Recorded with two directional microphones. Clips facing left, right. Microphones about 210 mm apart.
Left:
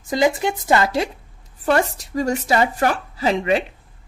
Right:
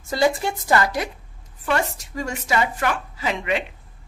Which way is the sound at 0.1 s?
20° left (ahead or behind).